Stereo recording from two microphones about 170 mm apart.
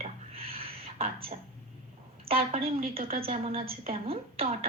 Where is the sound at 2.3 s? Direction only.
35° right (ahead or behind).